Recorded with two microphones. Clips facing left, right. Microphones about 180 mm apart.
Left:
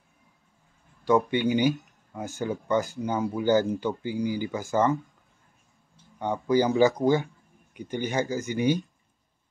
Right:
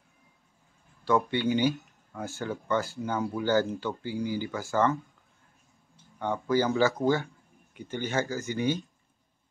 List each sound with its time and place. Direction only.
1.0 s speech: 15° left (ahead or behind)
6.1 s speech: 15° left (ahead or behind)